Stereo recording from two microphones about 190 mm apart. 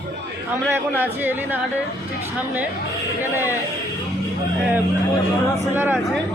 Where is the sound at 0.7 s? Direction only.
10° right (ahead or behind).